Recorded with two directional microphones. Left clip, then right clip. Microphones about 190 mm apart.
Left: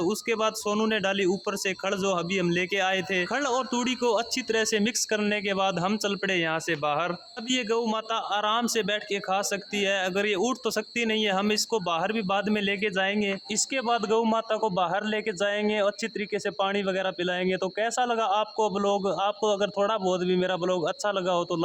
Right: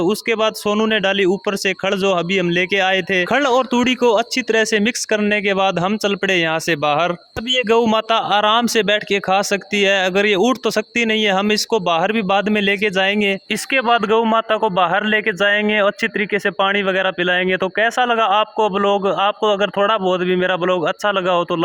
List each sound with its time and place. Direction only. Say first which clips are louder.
0.0 s speech: right 9 dB; 45° right (ahead or behind)
13.7 s a man's voice: right 11 dB; 25° right (ahead or behind)